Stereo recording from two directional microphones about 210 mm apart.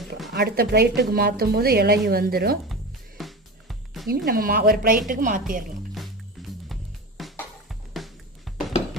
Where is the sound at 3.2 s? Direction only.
Centre (ahead or behind).